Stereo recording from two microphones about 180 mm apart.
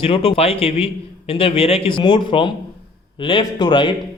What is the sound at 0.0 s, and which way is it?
A man's voice, 30° left (ahead or behind).